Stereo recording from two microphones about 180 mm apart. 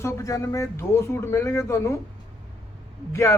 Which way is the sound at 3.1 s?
15° left (ahead or behind).